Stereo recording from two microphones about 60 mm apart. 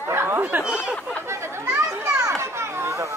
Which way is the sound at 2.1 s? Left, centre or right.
Right.